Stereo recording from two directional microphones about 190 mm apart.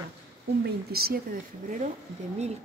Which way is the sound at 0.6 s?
55° right (ahead or behind).